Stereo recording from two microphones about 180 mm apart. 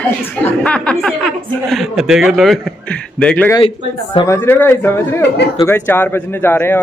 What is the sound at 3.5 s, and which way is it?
Speech, 25° left (ahead or behind).